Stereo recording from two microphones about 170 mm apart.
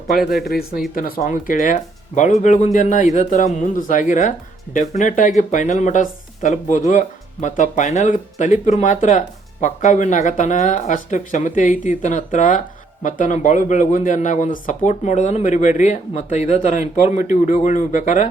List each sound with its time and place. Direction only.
0.4 s speech: 65° left (ahead or behind); by 18.3 s 45° left (ahead or behind)